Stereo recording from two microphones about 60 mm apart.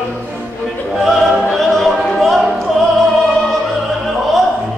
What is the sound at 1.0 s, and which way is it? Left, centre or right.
Music, centre.